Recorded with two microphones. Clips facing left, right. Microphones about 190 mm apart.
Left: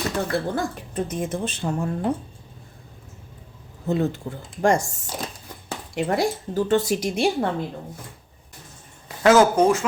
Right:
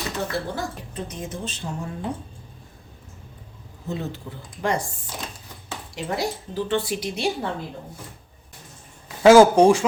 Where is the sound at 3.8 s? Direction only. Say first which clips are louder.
Left 7 dB; 55° left (ahead or behind).